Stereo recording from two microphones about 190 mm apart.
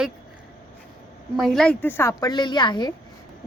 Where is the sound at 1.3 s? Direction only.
Centre (ahead or behind); by 2.9 s 25° left (ahead or behind).